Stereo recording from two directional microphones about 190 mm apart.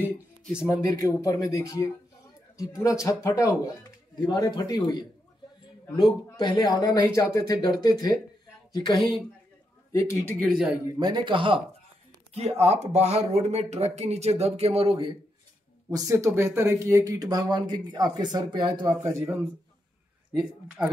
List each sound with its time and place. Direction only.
0.6 s speech: 15° left (ahead or behind)
6.3 s speech: 20° left (ahead or behind)
9.9 s speech: 15° left (ahead or behind)
10.3 s speech: centre (ahead or behind)
11.0 s speech: 25° right (ahead or behind)
15.9 s speech: 15° right (ahead or behind)